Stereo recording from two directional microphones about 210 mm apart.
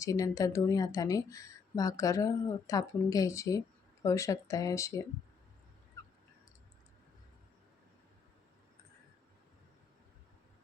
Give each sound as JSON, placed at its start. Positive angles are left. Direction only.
{"t": 0.0, "sound": "speech", "side_deg": 15}